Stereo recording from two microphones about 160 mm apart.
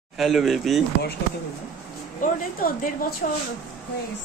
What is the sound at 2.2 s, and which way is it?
Speech, 60° left (ahead or behind).